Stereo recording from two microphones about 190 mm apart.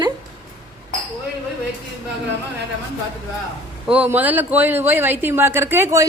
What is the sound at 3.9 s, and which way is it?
Speech, 10° right (ahead or behind).